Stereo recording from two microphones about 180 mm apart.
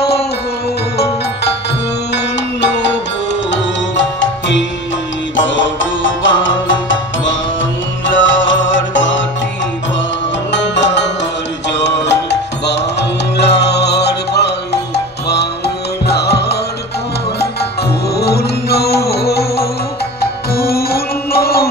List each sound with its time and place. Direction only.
3.5 s music: 85° left
10.5 s music: 80° left
16.1 s music: 65° left (ahead or behind)
18.2 s music: 65° left (ahead or behind)